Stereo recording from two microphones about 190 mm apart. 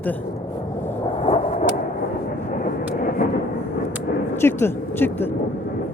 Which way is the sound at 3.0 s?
50° left (ahead or behind).